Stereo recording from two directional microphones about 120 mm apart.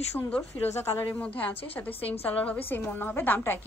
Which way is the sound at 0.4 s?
20° left (ahead or behind).